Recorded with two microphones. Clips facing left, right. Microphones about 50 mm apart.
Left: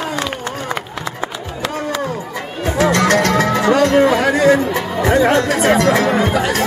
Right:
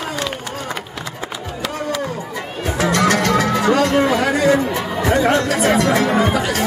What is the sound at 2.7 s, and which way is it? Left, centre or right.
Music, centre.